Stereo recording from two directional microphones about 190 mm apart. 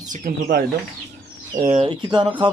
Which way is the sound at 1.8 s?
25° right (ahead or behind).